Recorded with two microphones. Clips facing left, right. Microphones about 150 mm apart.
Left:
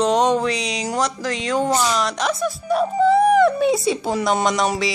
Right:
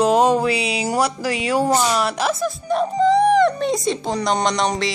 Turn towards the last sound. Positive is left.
turn(degrees=5)  # may be behind; listen again after turning